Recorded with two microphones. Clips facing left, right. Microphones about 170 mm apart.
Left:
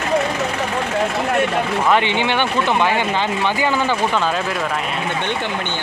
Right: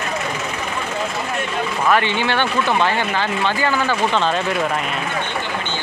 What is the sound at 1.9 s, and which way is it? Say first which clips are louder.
Speech: right 1 dB; 20° left (ahead or behind).